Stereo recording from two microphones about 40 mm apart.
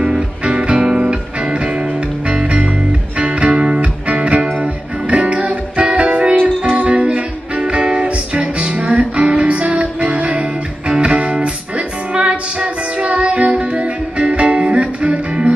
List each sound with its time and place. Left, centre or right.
0.0 s music: right
3.2 s music: right